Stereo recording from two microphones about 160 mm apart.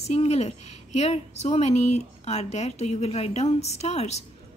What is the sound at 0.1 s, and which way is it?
A woman's voice, 40° left (ahead or behind).